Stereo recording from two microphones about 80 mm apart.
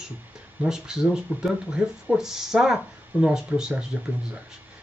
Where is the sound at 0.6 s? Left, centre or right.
Centre.